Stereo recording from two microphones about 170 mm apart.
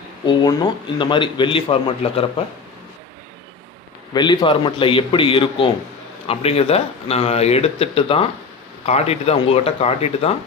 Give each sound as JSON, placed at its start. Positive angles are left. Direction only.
{"t": 0.4, "sound": "a man's voice", "side_deg": 25}
{"t": 4.1, "sound": "a man's voice", "side_deg": 25}